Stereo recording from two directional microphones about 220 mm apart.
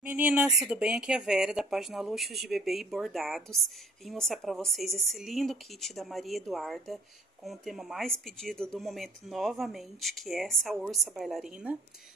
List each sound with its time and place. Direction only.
0.0 s speech: 5° right (ahead or behind)